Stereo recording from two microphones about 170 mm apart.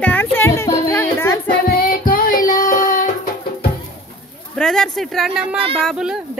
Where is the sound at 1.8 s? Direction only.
60° left (ahead or behind).